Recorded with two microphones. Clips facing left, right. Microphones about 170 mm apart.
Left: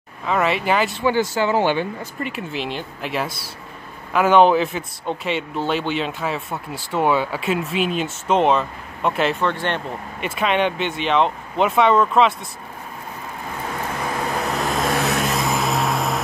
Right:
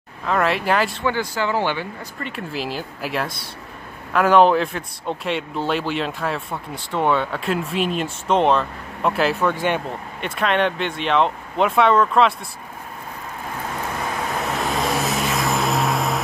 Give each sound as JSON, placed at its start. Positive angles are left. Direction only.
{"t": 0.2, "sound": "a man's voice", "side_deg": 5}
{"t": 1.3, "sound": "speech", "side_deg": 20}
{"t": 2.2, "sound": "a man's voice", "side_deg": 0}
{"t": 10.2, "sound": "a man's voice", "side_deg": 5}
{"t": 14.4, "sound": "vehicle", "side_deg": 0}